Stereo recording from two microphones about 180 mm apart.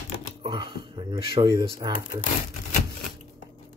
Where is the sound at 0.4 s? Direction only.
25° right (ahead or behind).